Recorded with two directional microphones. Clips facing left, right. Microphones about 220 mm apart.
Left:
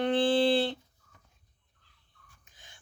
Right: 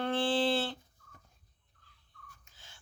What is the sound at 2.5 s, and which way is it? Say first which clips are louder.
Wheeze: left 1 dB; 15° left (ahead or behind).